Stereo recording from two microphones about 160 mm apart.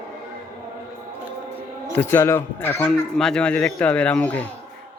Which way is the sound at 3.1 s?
5° left (ahead or behind).